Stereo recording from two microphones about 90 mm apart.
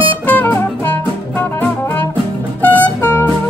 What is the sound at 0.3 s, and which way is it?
Music, 20° left (ahead or behind).